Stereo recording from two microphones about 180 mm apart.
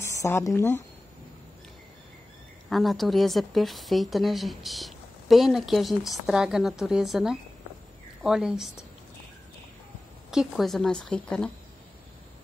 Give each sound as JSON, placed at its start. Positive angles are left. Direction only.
{"t": 0.0, "sound": "speech", "side_deg": 15}
{"t": 2.7, "sound": "a woman's voice", "side_deg": 0}
{"t": 10.3, "sound": "a woman's voice", "side_deg": 0}